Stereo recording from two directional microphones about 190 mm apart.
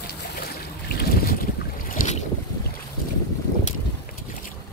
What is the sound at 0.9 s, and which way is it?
Boat, 55° left (ahead or behind).